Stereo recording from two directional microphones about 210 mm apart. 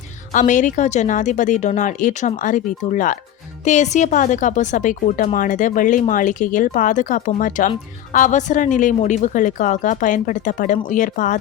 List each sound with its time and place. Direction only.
0.3 s speech: 35° left (ahead or behind)